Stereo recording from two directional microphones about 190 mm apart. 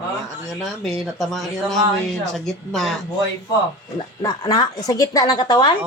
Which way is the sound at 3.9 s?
20° left (ahead or behind).